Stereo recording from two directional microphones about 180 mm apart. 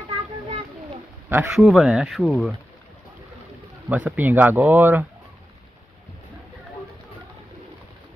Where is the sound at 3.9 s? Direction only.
10° right (ahead or behind).